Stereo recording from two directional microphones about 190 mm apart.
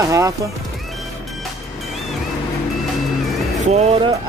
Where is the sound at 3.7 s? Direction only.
30° right (ahead or behind).